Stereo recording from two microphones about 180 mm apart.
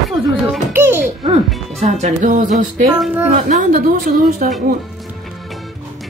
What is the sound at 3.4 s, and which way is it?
A woman's voice, 50° right (ahead or behind).